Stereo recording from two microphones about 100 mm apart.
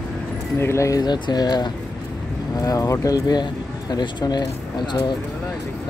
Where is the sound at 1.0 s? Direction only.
45° left (ahead or behind).